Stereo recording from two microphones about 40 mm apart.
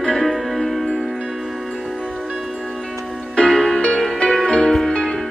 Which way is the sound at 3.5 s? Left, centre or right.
Centre.